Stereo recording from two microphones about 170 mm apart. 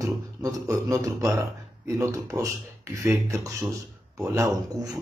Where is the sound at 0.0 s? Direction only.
20° right (ahead or behind).